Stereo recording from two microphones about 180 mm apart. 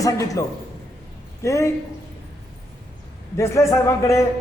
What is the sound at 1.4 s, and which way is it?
Speech, 15° left (ahead or behind).